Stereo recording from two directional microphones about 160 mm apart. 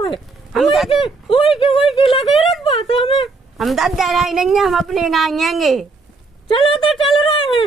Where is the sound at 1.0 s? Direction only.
35° left (ahead or behind).